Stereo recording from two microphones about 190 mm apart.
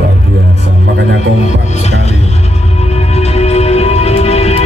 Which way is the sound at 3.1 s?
35° left (ahead or behind).